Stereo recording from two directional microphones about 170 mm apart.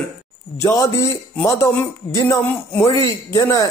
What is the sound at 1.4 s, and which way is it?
A man's voice, 15° left (ahead or behind).